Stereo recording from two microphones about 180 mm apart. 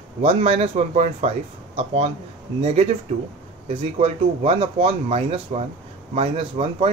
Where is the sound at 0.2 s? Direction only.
35° right (ahead or behind).